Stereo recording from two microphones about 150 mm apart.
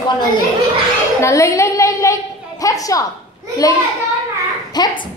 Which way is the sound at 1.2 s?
20° left (ahead or behind).